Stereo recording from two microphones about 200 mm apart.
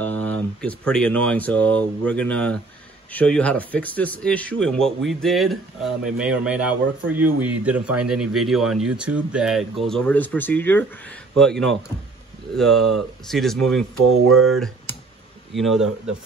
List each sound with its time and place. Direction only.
0.0 s a man's voice: 10° left (ahead or behind)
14.2 s speech: 90° right
15.5 s speech: centre (ahead or behind)